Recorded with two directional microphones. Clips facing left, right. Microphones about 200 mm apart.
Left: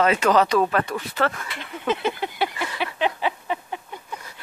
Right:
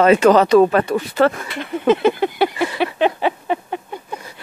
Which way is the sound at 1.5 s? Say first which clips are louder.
Right 10 dB; 60° right (ahead or behind).